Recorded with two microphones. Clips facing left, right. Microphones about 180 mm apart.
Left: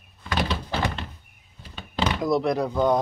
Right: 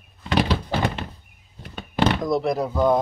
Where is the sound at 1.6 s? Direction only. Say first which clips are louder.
Right 3 dB; 60° right (ahead or behind).